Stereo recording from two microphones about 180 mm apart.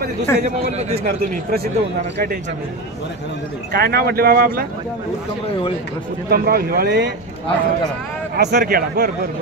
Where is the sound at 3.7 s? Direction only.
60° right (ahead or behind).